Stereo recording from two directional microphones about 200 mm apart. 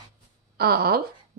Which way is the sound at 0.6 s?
50° right (ahead or behind).